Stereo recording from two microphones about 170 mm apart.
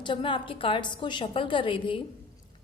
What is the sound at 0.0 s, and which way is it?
A woman's voice, 30° left (ahead or behind).